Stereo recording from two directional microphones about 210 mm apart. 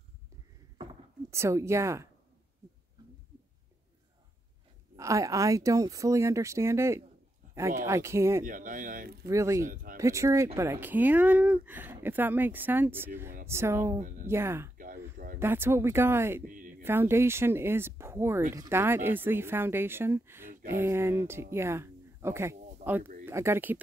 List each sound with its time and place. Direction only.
1.3 s speech: 15° right (ahead or behind)
4.9 s speech: 15° right (ahead or behind)
8.5 s speech: 40° right (ahead or behind)
9.2 s speech: 15° right (ahead or behind)
9.7 s a sound: 40° right (ahead or behind)
9.9 s speech: 15° right (ahead or behind)
14.8 s a sound: 40° right (ahead or behind)
15.3 s speech: 10° right (ahead or behind)
16.4 s a sound: 40° right (ahead or behind)
16.8 s speech: 10° right (ahead or behind)